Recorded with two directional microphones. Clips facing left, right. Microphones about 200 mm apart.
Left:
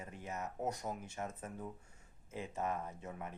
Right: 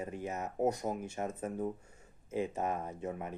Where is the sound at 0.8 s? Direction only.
30° right (ahead or behind).